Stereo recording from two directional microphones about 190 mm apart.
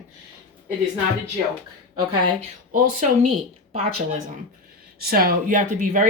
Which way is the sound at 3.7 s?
30° right (ahead or behind).